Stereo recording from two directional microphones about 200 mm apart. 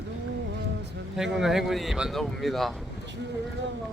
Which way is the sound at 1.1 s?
Centre (ahead or behind).